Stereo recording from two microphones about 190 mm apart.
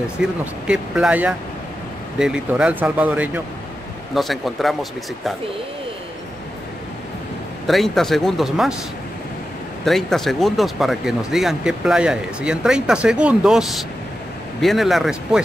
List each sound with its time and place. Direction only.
0.2 s speech: 5° right (ahead or behind)
7.6 s speech: centre (ahead or behind)
9.8 s speech: centre (ahead or behind)